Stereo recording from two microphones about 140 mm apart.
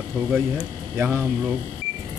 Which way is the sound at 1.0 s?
15° right (ahead or behind).